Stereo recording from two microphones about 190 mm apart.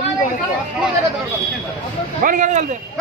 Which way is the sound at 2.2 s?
45° right (ahead or behind).